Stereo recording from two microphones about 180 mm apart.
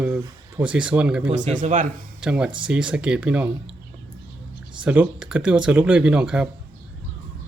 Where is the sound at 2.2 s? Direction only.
5° right (ahead or behind).